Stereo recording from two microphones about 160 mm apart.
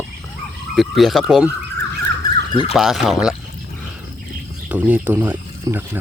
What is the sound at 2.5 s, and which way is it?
Speech, 30° left (ahead or behind).